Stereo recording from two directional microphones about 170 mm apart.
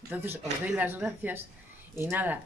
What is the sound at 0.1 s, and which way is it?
Speech, 10° right (ahead or behind).